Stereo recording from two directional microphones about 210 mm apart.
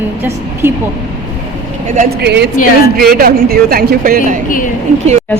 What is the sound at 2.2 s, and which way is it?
Speech, 50° right (ahead or behind).